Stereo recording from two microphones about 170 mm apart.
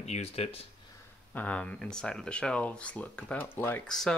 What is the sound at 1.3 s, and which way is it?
Speech, 10° left (ahead or behind).